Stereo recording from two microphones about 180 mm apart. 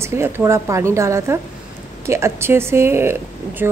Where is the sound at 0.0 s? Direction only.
15° right (ahead or behind).